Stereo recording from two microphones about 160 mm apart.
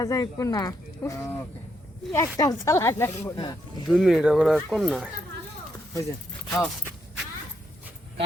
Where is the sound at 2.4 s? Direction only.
20° left (ahead or behind).